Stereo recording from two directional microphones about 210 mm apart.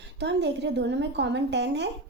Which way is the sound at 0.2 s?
55° right (ahead or behind).